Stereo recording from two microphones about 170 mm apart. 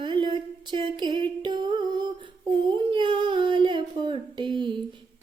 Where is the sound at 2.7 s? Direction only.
30° right (ahead or behind).